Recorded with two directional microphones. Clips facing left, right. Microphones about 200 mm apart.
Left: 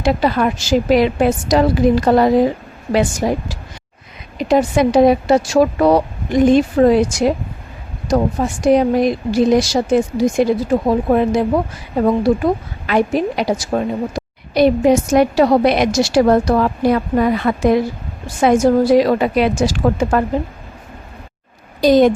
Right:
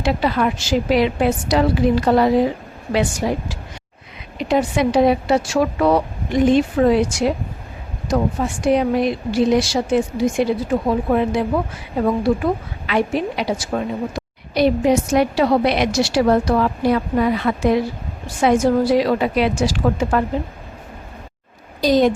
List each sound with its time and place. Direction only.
0.0 s a woman's voice: 45° left (ahead or behind)
12.9 s a woman's voice: 45° left (ahead or behind)
21.8 s speech: 55° left (ahead or behind)